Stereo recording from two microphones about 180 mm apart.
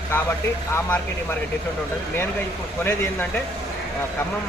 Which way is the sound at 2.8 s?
10° left (ahead or behind).